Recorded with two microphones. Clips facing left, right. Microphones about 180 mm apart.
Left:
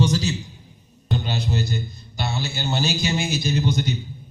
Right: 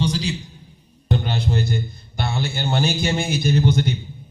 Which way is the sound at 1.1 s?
55° right (ahead or behind).